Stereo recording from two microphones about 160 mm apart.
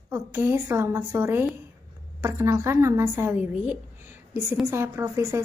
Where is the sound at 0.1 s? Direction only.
15° right (ahead or behind).